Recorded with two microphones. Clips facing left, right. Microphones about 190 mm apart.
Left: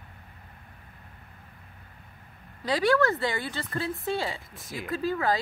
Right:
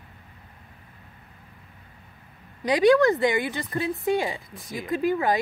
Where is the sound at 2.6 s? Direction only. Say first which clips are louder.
Right 6 dB; 15° right (ahead or behind).